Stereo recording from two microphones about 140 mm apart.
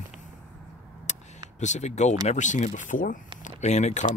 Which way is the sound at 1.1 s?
60° left (ahead or behind).